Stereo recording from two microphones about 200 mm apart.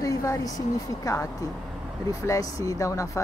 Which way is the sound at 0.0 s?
15° left (ahead or behind).